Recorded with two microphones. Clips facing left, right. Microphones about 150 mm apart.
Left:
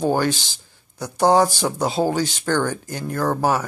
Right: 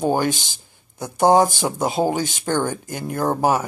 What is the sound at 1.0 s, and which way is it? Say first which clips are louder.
Speech: right 1 dB; 20° right (ahead or behind).